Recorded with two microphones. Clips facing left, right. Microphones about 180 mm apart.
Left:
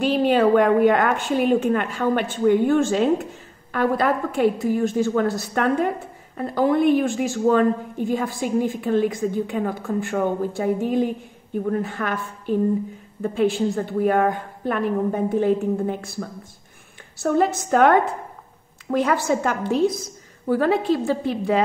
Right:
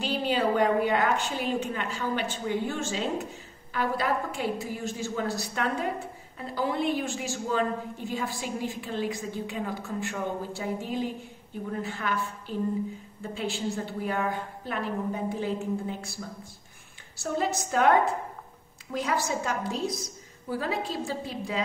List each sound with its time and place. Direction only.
0.0 s a woman's voice: 55° left (ahead or behind)